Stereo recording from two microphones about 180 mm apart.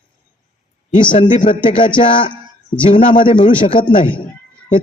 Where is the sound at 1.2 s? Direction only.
45° left (ahead or behind).